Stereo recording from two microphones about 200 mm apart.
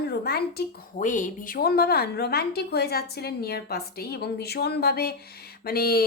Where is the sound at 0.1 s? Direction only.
50° left (ahead or behind).